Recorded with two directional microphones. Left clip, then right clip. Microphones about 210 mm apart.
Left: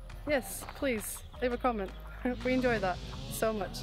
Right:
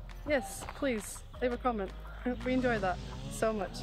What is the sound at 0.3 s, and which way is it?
Speech, 10° left (ahead or behind).